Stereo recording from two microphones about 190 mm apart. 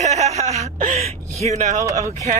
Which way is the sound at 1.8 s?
15° right (ahead or behind).